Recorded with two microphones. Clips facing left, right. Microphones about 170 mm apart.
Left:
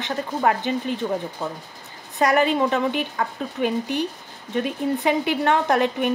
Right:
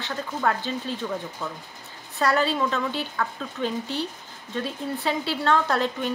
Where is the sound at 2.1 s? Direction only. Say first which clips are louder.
Left 4 dB; 15° left (ahead or behind).